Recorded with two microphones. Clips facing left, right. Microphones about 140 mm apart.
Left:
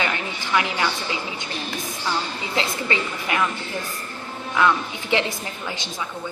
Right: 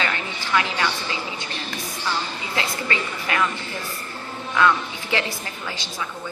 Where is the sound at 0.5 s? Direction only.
15° left (ahead or behind).